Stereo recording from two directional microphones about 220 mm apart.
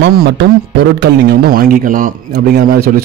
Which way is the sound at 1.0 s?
45° right (ahead or behind).